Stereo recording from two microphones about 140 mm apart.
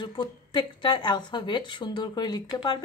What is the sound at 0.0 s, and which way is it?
A woman's voice, 35° left (ahead or behind).